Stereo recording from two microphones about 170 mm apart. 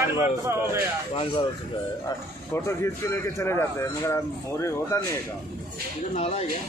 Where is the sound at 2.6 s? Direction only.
15° left (ahead or behind).